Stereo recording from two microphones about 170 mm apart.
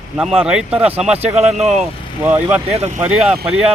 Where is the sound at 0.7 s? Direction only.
35° right (ahead or behind).